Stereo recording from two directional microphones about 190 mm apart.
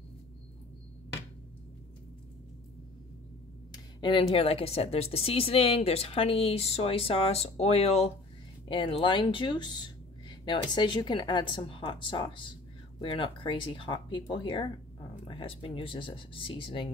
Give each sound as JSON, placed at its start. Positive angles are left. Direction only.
{"t": 3.7, "sound": "speech", "side_deg": 25}